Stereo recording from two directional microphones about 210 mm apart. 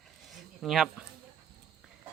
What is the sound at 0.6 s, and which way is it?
Speech, centre (ahead or behind).